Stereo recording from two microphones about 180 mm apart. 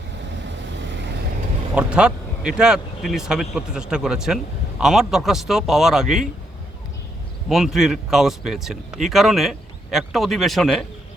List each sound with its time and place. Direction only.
0.3 s vehicle: 80° right
1.7 s speech: 5° right (ahead or behind)
7.4 s speech: centre (ahead or behind)